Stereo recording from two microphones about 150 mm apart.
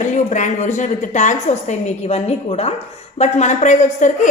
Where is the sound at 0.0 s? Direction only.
55° left (ahead or behind).